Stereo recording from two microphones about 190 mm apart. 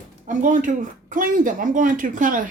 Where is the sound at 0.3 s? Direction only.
40° right (ahead or behind).